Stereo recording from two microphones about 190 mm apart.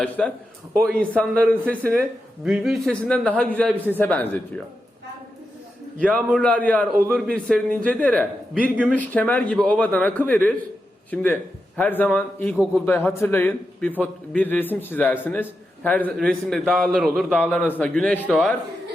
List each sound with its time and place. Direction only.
0.0 s a man's voice: 5° left (ahead or behind)
6.0 s a man's voice: 5° left (ahead or behind)
6.9 s a man's voice: 50° right (ahead or behind)
7.3 s a man's voice: 5° left (ahead or behind)